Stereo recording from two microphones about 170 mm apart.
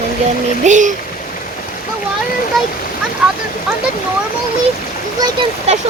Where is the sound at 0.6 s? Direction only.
45° right (ahead or behind).